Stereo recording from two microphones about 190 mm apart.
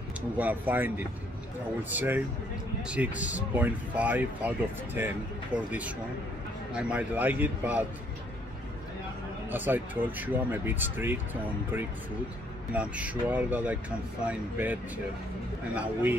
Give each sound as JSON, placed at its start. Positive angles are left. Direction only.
{"t": 0.4, "sound": "speech", "side_deg": -10}
{"t": 9.5, "sound": "speech", "side_deg": -10}
{"t": 12.7, "sound": "speech", "side_deg": -5}